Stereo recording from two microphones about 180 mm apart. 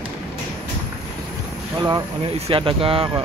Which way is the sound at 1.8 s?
25° right (ahead or behind).